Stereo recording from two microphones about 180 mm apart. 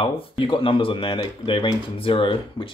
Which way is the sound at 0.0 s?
30° left (ahead or behind).